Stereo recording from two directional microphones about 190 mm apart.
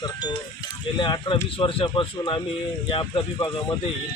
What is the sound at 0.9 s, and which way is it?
Speech, 25° left (ahead or behind).